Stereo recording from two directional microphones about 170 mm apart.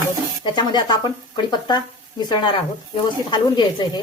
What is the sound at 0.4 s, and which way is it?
Speech, 25° left (ahead or behind).